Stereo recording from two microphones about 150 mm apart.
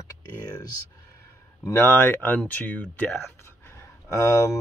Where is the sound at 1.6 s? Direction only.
15° left (ahead or behind).